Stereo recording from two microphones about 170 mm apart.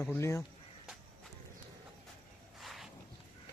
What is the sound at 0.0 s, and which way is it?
Speech, 15° left (ahead or behind).